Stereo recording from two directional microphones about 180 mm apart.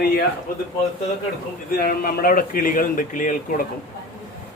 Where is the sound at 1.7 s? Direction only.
55° left (ahead or behind).